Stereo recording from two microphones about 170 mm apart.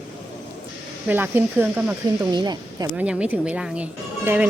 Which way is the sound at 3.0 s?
5° right (ahead or behind).